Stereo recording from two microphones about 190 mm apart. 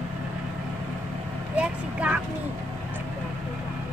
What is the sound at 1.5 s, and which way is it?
Vehicle, 5° right (ahead or behind).